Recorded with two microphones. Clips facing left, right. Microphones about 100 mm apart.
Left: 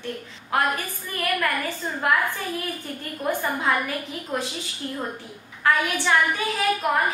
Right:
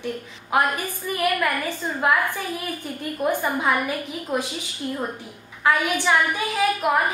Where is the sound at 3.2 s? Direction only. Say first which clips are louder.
Right 2 dB; 15° right (ahead or behind).